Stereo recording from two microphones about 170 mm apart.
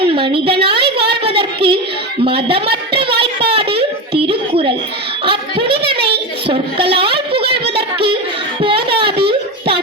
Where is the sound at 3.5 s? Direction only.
35° right (ahead or behind).